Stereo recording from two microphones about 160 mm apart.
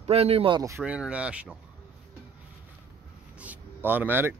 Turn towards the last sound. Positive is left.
turn(degrees=-15)  # may be behind; listen again after turning